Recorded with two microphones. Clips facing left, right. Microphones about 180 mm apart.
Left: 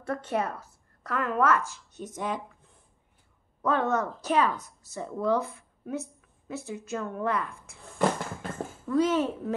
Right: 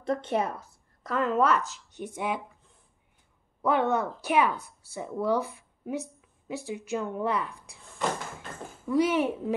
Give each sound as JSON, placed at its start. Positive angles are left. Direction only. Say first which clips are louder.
{"t": 0.0, "sound": "a woman's voice", "louder": "right 2 dB", "side_deg": -20}
{"t": 3.6, "sound": "a woman's voice", "louder": "right 1 dB", "side_deg": -10}
{"t": 8.8, "sound": "speech", "louder": "even", "side_deg": -10}